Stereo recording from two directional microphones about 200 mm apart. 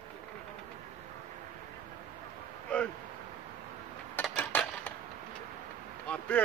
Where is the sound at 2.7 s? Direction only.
5° left (ahead or behind).